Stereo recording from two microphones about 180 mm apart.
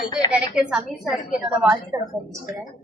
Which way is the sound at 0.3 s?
5° right (ahead or behind).